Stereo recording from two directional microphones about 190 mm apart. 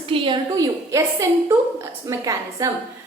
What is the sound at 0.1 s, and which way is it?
A woman's voice, 25° right (ahead or behind).